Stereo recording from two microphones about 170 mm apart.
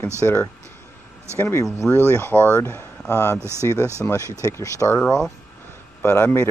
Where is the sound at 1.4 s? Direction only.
15° left (ahead or behind).